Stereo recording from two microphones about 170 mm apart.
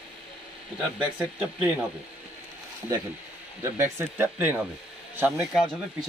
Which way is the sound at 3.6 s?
15° right (ahead or behind).